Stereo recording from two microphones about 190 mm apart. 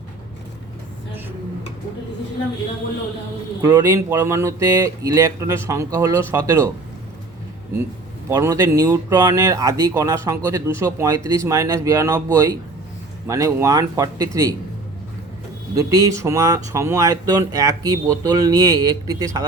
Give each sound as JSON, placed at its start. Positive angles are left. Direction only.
{"t": 3.6, "sound": "speech", "side_deg": -20}
{"t": 8.3, "sound": "speech", "side_deg": -15}
{"t": 15.7, "sound": "speech", "side_deg": -20}